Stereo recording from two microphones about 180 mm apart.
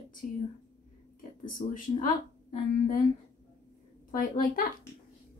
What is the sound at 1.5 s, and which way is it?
Speech, 50° left (ahead or behind).